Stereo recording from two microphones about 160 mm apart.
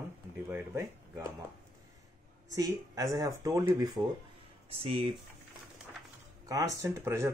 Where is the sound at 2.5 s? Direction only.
20° right (ahead or behind).